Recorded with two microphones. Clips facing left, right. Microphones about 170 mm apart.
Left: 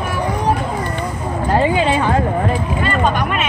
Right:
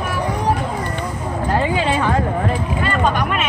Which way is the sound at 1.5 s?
20° left (ahead or behind).